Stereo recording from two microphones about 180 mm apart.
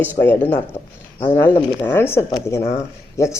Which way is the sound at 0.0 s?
10° left (ahead or behind).